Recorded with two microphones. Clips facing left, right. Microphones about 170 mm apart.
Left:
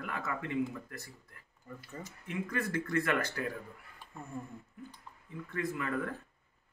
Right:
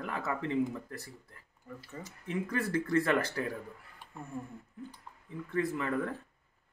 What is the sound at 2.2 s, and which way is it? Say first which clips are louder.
Speech: right 3 dB; 35° right (ahead or behind).